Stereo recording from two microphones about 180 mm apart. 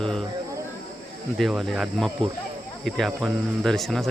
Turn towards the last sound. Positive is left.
turn(degrees=0)  # may be behind; listen again after turning